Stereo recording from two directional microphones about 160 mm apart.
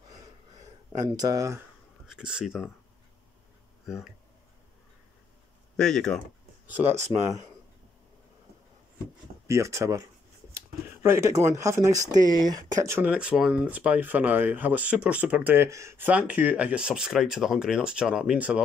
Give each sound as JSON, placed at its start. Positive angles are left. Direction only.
{"t": 1.0, "sound": "speech", "side_deg": -25}
{"t": 2.0, "sound": "speech", "side_deg": -5}
{"t": 3.8, "sound": "speech", "side_deg": 0}
{"t": 5.8, "sound": "speech", "side_deg": 5}
{"t": 6.9, "sound": "speech", "side_deg": -45}
{"t": 9.5, "sound": "speech", "side_deg": -20}
{"t": 12.8, "sound": "speech", "side_deg": -10}